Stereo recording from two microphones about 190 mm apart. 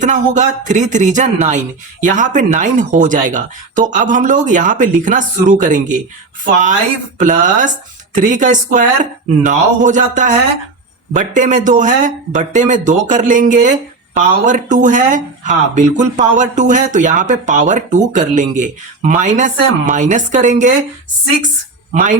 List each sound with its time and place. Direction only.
0.0 s speech: 40° right (ahead or behind)
21.9 s speech: 40° right (ahead or behind)